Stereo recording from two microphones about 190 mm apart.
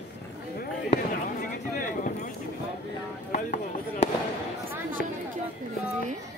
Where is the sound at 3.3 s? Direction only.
40° left (ahead or behind).